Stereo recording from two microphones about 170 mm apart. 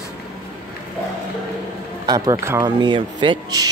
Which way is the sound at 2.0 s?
25° right (ahead or behind).